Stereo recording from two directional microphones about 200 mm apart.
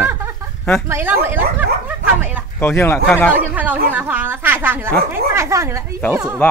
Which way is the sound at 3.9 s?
10° right (ahead or behind).